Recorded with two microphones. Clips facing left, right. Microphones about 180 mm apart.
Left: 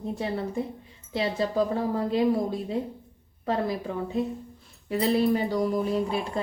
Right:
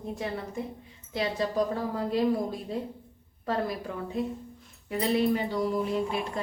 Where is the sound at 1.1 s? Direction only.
25° left (ahead or behind).